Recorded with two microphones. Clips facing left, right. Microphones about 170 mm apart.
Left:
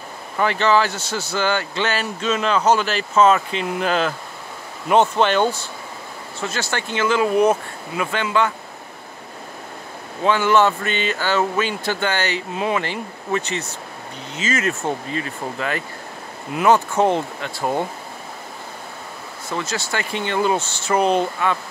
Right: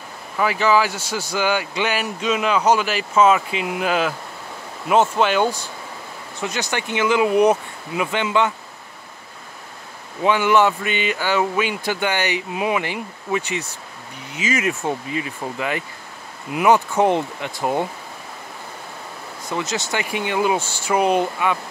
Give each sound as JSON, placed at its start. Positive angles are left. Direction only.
{"t": 0.4, "sound": "speech", "side_deg": -5}
{"t": 10.2, "sound": "speech", "side_deg": -15}
{"t": 19.5, "sound": "speech", "side_deg": -20}